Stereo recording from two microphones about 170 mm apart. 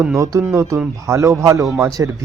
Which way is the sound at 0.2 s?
20° right (ahead or behind).